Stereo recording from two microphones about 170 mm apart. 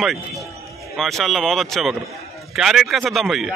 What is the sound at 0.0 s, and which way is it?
A man's voice, centre (ahead or behind).